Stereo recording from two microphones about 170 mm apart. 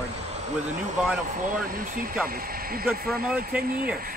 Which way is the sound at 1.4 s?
55° right (ahead or behind).